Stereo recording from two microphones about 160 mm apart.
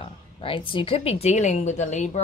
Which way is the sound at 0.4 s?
35° left (ahead or behind).